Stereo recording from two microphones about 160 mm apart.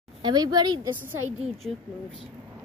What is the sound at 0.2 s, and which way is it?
Speech, 25° right (ahead or behind).